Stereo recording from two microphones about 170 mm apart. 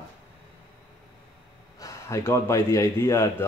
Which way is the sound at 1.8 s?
20° left (ahead or behind).